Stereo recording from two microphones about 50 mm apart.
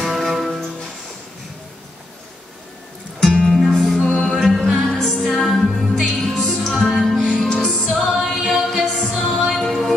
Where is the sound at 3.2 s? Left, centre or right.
Centre.